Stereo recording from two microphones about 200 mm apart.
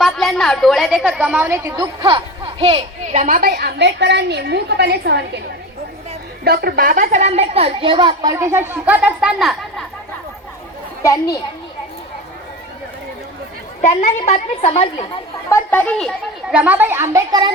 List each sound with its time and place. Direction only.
0.0 s a woman's voice: centre (ahead or behind); by 3.2 s 30° right (ahead or behind)
3.2 s a woman's voice: 45° right (ahead or behind)
6.4 s a child's voice: 50° right (ahead or behind); by 9.8 s centre (ahead or behind)
11.0 s a child's voice: 15° left (ahead or behind)
13.8 s a woman's voice: 35° left (ahead or behind)
15.4 s a child's voice: 10° left (ahead or behind); by 17.5 s 15° right (ahead or behind)